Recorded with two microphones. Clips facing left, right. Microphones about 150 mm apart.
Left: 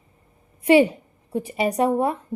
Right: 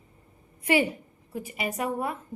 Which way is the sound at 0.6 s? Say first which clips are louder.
Left 9 dB; 25° left (ahead or behind).